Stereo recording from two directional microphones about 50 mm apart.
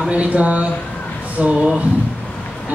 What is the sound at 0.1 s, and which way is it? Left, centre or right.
Speech, right.